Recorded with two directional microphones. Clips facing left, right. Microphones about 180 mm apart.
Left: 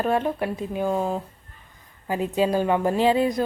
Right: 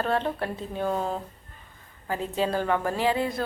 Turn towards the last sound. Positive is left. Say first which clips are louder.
# left 6 dB
turn(degrees=20)  # may be behind; listen again after turning